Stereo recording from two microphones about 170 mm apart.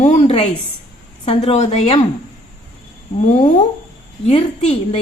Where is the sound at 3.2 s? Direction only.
45° left (ahead or behind).